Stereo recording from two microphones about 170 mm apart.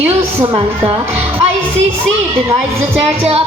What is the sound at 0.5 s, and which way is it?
Speech, 35° right (ahead or behind).